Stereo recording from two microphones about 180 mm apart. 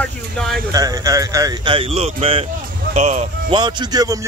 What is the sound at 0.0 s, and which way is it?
Speech, centre (ahead or behind).